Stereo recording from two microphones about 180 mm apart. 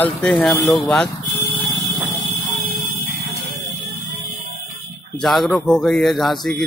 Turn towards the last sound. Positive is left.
turn(degrees=0)  # may be behind; listen again after turning